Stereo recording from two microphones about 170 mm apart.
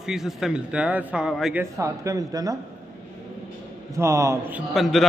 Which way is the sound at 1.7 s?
20° right (ahead or behind).